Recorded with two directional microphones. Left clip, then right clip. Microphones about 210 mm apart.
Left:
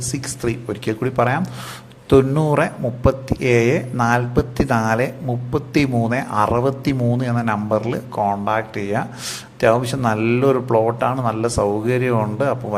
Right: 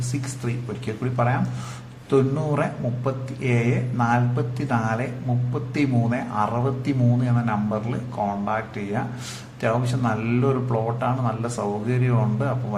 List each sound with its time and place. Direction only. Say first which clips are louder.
0.1 s a man's voice: left 8 dB; 40° left (ahead or behind)